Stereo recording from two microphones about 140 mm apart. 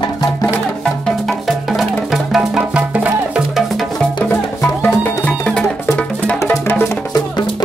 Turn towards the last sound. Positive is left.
turn(degrees=20)  # may be behind; listen again after turning